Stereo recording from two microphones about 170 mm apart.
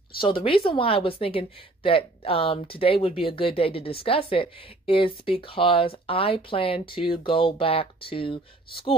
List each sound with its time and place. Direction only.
0.2 s a woman's voice: 30° left (ahead or behind)